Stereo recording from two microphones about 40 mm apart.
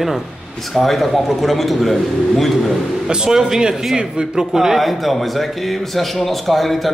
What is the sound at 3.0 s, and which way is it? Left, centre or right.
A man's voice, centre.